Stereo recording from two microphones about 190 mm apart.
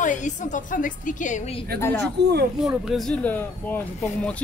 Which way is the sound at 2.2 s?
60° right (ahead or behind).